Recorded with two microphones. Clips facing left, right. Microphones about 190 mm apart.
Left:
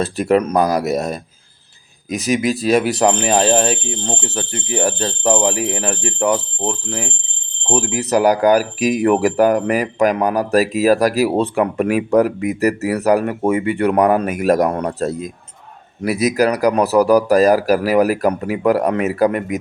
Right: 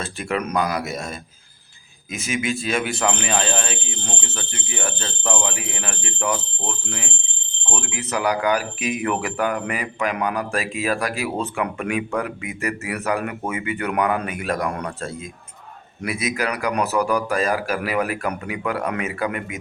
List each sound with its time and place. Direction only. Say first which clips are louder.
0.0 s speech: left 10 dB; 35° left (ahead or behind)
4.0 s speech: left 8 dB; 30° left (ahead or behind)